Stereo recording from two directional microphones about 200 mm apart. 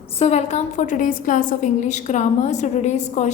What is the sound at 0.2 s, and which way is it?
A woman's voice, 35° left (ahead or behind).